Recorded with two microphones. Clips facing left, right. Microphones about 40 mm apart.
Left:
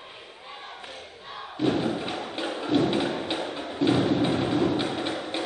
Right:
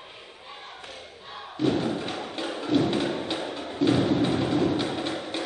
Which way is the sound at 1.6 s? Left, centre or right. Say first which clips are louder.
Even; centre.